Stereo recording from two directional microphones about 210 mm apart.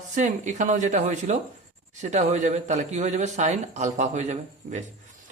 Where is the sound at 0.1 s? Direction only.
35° right (ahead or behind).